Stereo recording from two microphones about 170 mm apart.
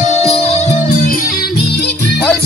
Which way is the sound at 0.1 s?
40° left (ahead or behind).